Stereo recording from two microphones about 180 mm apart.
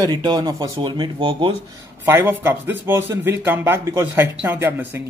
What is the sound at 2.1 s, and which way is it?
Speech, 10° right (ahead or behind).